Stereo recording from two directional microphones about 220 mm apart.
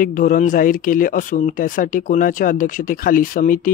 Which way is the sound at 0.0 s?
40° left (ahead or behind).